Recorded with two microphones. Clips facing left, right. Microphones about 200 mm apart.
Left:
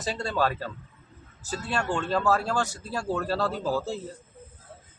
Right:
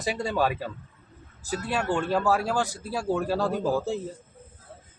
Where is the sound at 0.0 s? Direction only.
10° right (ahead or behind).